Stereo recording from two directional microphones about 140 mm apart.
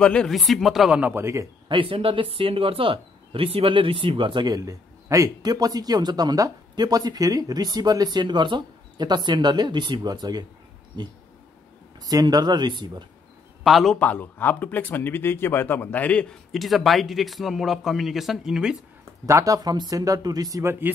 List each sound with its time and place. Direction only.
0.0 s a man's voice: 5° left (ahead or behind); by 1.5 s 20° right (ahead or behind)
1.7 s speech: 40° right (ahead or behind)
13.7 s a man's voice: centre (ahead or behind)
19.2 s speech: 25° right (ahead or behind)